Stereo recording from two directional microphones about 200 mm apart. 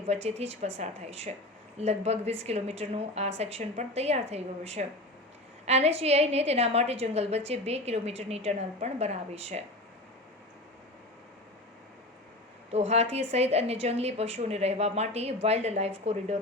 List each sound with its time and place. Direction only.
0.1 s a woman's voice: 30° right (ahead or behind)
12.7 s a woman's voice: 30° right (ahead or behind)